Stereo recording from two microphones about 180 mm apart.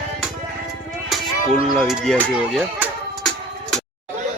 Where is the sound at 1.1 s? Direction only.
Centre (ahead or behind).